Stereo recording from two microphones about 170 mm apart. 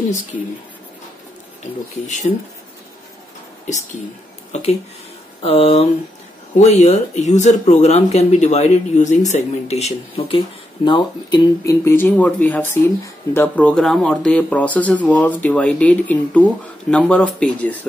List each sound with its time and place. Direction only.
1.6 s speech: 45° left (ahead or behind)
3.6 s speech: 45° left (ahead or behind); by 17.7 s 10° left (ahead or behind)